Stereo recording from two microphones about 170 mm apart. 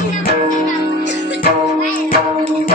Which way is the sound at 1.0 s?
90° left.